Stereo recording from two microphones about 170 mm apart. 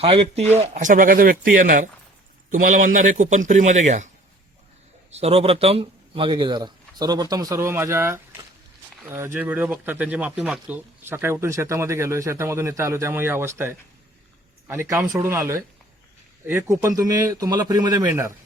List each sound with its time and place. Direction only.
0.0 s speech: 35° right (ahead or behind)
0.7 s a man's voice: 50° right (ahead or behind)
5.2 s speech: 35° right (ahead or behind); by 18.3 s 15° right (ahead or behind)